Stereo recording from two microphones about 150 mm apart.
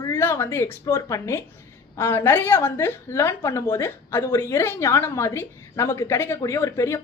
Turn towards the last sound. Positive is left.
turn(degrees=20)  # may be behind; listen again after turning